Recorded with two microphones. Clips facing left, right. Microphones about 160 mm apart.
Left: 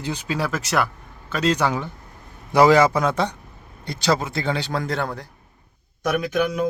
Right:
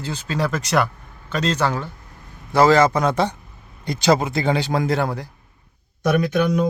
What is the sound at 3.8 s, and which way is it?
A man's voice, 15° right (ahead or behind).